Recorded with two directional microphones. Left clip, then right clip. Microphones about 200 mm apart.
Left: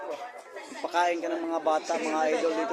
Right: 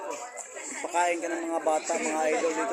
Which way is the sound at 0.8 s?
10° left (ahead or behind).